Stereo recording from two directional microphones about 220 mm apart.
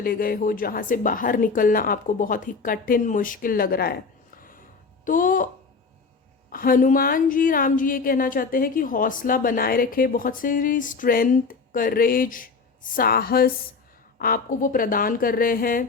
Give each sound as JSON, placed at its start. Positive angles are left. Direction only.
{"t": 0.0, "sound": "speech", "side_deg": 40}
{"t": 4.4, "sound": "a sound", "side_deg": 40}
{"t": 5.0, "sound": "speech", "side_deg": 40}
{"t": 6.5, "sound": "speech", "side_deg": 40}